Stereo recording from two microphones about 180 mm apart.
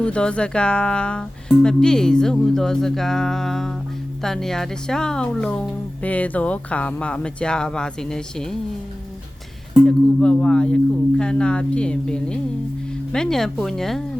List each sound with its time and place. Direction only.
0.0 s speech: 5° left (ahead or behind)
9.8 s speech: 5° left (ahead or behind)